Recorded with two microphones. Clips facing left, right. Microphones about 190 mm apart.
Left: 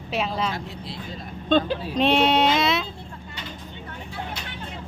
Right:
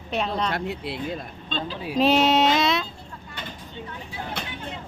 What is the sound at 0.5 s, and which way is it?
Speech, 65° right (ahead or behind).